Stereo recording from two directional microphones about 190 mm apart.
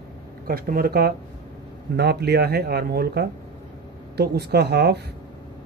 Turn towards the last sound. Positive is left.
turn(degrees=-60)  # may be behind; listen again after turning